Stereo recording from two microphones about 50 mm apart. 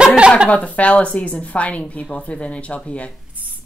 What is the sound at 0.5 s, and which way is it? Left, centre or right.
A woman's voice, left.